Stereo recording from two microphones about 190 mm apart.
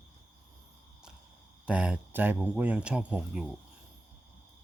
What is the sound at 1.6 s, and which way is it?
Speech, 5° right (ahead or behind).